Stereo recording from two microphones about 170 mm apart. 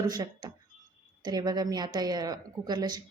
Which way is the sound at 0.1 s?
25° right (ahead or behind).